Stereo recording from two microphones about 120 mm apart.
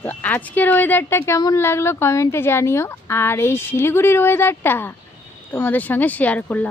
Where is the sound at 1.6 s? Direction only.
20° left (ahead or behind).